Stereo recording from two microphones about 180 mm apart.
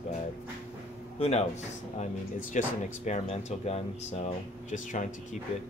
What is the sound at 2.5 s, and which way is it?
Speech, 45° left (ahead or behind).